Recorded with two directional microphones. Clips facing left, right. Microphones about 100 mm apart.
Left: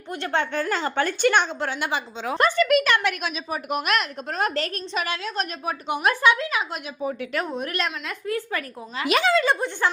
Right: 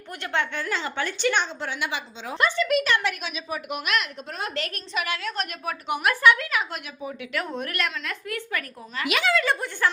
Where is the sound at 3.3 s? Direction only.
40° left (ahead or behind).